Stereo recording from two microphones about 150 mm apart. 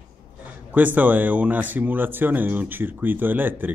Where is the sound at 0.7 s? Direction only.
10° right (ahead or behind).